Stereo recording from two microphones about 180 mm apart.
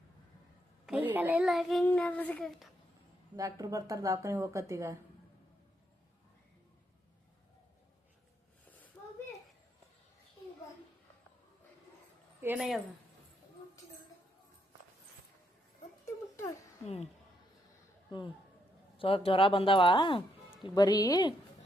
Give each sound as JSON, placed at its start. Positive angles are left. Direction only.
{"t": 0.9, "sound": "a child's voice", "side_deg": -10}
{"t": 3.3, "sound": "a woman's voice", "side_deg": -20}
{"t": 9.0, "sound": "a sound", "side_deg": 15}
{"t": 12.4, "sound": "speech", "side_deg": -5}
{"t": 16.0, "sound": "a sound", "side_deg": 15}
{"t": 16.8, "sound": "speech", "side_deg": 40}
{"t": 18.1, "sound": "speech", "side_deg": 25}